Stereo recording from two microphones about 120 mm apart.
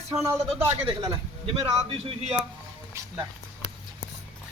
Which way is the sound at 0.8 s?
40° right (ahead or behind).